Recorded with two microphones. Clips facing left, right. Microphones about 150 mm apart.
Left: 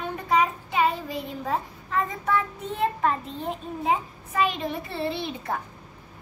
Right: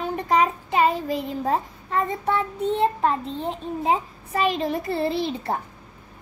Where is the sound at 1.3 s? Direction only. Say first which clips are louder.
Right 4 dB; 35° right (ahead or behind).